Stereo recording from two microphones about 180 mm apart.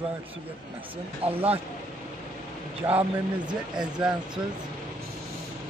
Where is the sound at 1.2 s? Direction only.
35° right (ahead or behind).